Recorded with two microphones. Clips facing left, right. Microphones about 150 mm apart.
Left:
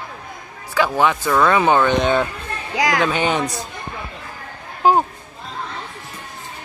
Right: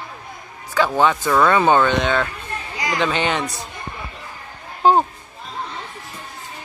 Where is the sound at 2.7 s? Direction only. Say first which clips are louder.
Left 6 dB; 90° left.